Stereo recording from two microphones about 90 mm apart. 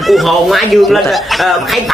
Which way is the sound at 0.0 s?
Centre (ahead or behind).